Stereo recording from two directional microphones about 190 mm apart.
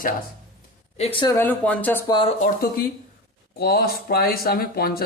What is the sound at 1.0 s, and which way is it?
Speech, 30° left (ahead or behind).